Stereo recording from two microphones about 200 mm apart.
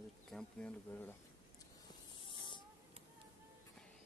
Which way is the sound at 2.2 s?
25° left (ahead or behind).